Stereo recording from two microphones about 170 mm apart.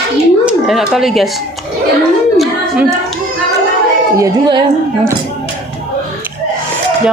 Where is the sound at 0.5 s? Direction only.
Centre (ahead or behind).